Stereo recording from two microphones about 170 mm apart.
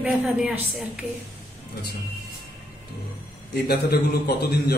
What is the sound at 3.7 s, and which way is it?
Speech, 70° left (ahead or behind).